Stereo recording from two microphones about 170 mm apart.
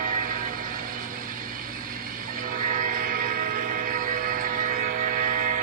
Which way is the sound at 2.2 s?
55° right (ahead or behind).